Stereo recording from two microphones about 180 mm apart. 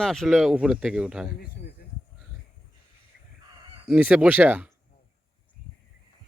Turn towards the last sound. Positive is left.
turn(degrees=-10)  # may be behind; listen again after turning